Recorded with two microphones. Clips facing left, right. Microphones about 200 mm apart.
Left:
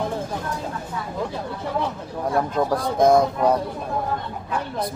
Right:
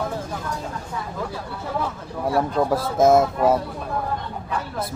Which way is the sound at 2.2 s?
Centre (ahead or behind).